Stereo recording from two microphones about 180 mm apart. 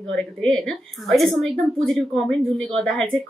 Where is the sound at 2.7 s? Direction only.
Centre (ahead or behind).